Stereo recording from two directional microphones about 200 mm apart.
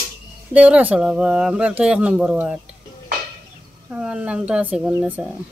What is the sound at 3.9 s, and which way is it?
Speech, 5° right (ahead or behind).